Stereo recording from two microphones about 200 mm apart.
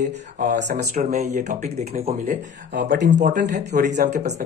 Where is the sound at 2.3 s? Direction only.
45° right (ahead or behind).